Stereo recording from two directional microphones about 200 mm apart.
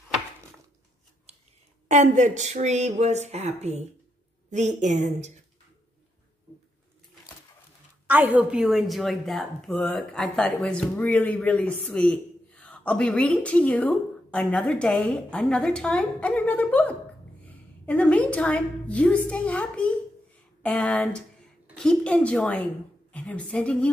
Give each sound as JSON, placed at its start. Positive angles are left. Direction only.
{"t": 1.9, "sound": "speech", "side_deg": -35}
{"t": 8.1, "sound": "a woman's voice", "side_deg": -10}